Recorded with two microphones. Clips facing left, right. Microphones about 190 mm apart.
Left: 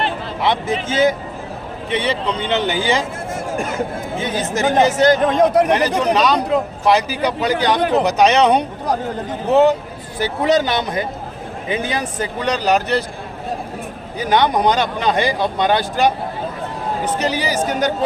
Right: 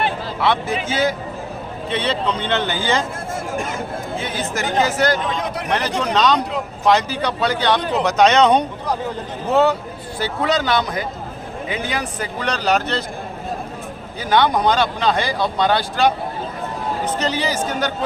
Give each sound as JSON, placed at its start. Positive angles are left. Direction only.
{"t": 0.3, "sound": "speech", "side_deg": 20}
{"t": 1.9, "sound": "speech", "side_deg": 15}
{"t": 4.2, "sound": "a man's voice", "side_deg": 20}
{"t": 5.2, "sound": "speech", "side_deg": 50}
{"t": 5.7, "sound": "a man's voice", "side_deg": 10}
{"t": 14.2, "sound": "speech", "side_deg": 15}
{"t": 17.2, "sound": "speech", "side_deg": 10}